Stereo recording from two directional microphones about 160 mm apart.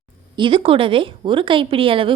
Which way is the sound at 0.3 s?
30° right (ahead or behind).